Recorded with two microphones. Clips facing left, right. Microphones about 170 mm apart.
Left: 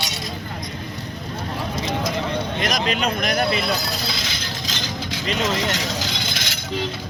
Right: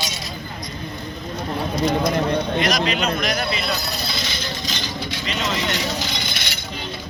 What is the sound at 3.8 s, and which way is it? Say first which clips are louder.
Music: even; 90° left.